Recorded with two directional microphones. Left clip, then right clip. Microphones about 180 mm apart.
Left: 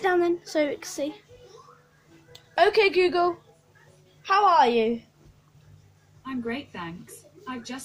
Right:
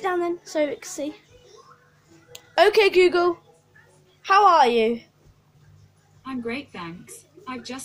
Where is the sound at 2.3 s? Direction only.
35° right (ahead or behind).